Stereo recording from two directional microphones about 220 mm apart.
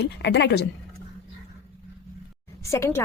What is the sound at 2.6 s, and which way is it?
Speech, 10° left (ahead or behind).